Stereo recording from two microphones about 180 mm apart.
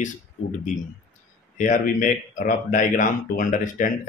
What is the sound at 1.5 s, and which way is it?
Speech, 45° left (ahead or behind).